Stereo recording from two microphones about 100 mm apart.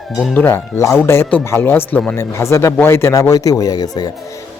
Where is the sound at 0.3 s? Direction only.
25° left (ahead or behind).